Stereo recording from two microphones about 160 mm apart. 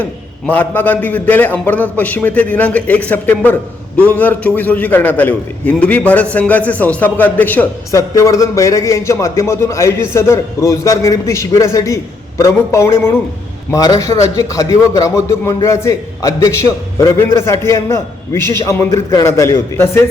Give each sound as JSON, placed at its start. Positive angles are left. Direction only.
{"t": 0.5, "sound": "a man's voice", "side_deg": 10}